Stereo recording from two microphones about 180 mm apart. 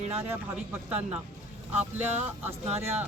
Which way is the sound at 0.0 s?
35° right (ahead or behind).